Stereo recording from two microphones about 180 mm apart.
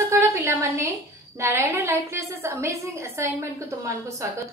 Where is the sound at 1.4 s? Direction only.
15° right (ahead or behind).